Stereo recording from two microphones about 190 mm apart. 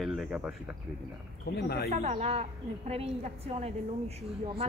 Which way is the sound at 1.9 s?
35° right (ahead or behind).